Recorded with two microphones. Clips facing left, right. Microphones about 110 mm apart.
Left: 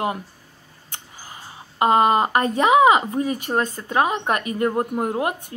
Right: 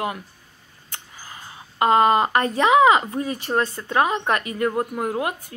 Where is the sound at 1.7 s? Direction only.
20° left (ahead or behind).